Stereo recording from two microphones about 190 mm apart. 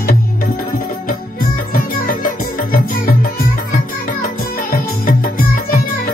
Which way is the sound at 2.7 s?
50° left (ahead or behind).